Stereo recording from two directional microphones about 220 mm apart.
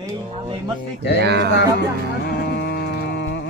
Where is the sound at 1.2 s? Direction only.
50° right (ahead or behind).